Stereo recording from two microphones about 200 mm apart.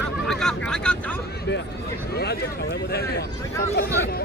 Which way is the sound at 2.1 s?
50° left (ahead or behind).